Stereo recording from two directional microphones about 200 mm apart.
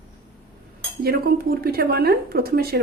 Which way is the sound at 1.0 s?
50° right (ahead or behind).